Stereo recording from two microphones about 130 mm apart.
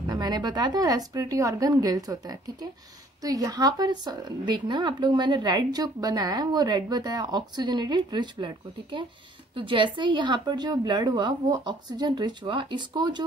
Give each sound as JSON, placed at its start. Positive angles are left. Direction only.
{"t": 0.0, "sound": "speech", "side_deg": -30}